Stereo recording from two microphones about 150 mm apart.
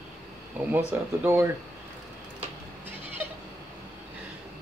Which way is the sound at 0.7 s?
15° right (ahead or behind).